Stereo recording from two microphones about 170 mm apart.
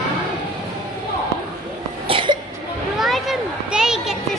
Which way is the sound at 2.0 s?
30° right (ahead or behind).